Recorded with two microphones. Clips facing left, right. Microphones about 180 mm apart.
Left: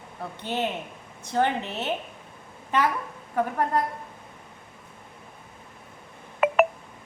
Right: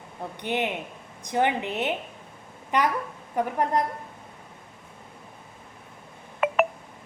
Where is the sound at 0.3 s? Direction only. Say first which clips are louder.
Right 1 dB; 15° right (ahead or behind).